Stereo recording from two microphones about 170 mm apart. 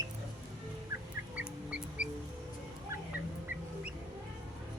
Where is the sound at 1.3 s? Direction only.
5° right (ahead or behind).